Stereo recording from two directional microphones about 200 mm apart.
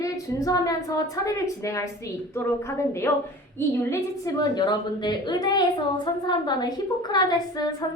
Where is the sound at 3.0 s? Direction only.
10° left (ahead or behind).